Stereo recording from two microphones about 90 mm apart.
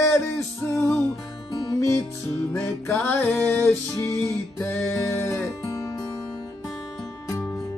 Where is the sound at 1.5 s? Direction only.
45° left (ahead or behind).